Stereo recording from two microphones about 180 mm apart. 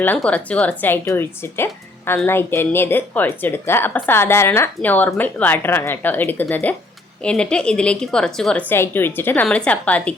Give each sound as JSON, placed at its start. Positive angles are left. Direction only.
{"t": 0.0, "sound": "speech", "side_deg": 10}